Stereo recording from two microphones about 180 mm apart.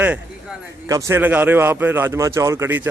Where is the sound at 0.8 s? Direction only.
15° right (ahead or behind).